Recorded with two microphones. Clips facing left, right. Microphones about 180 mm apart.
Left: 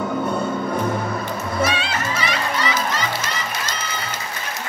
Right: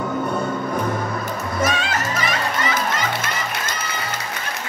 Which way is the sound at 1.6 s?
45° right (ahead or behind).